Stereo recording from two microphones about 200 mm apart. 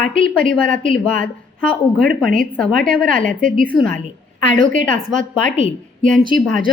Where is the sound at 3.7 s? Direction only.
5° left (ahead or behind).